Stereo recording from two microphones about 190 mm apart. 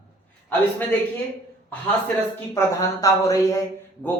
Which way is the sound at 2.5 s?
15° left (ahead or behind).